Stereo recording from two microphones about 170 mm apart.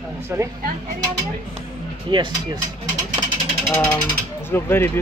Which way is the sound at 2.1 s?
25° right (ahead or behind).